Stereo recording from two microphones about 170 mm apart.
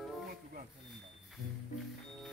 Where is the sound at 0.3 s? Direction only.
55° right (ahead or behind).